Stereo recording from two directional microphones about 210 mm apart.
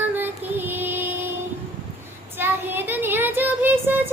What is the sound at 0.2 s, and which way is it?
Child singing, 10° right (ahead or behind).